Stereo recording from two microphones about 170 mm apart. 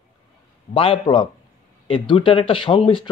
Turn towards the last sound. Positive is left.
turn(degrees=30)  # may be behind; listen again after turning